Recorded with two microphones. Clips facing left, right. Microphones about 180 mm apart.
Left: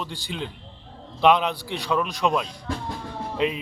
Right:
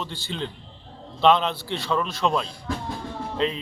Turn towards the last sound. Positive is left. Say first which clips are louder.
# left 1 dB
turn(degrees=10)  # may be behind; listen again after turning